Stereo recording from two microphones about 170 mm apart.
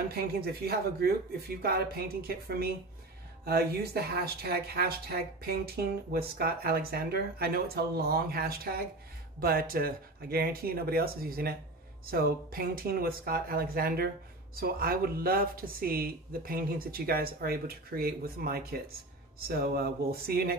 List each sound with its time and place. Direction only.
0.1 s speech: 65° right (ahead or behind)